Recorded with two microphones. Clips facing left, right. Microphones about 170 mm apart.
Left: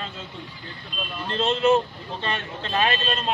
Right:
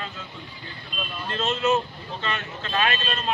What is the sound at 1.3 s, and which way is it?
Speech, 30° left (ahead or behind).